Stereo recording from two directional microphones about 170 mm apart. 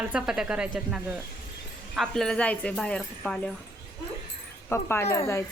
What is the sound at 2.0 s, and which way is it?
Speech, 5° left (ahead or behind).